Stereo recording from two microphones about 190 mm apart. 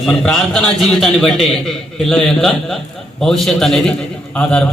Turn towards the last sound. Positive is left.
turn(degrees=5)  # may be behind; listen again after turning